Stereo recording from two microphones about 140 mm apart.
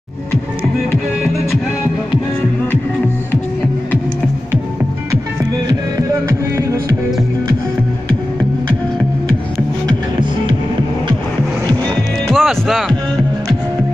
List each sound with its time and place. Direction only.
5.7 s music: 25° right (ahead or behind)
12.3 s music: centre (ahead or behind)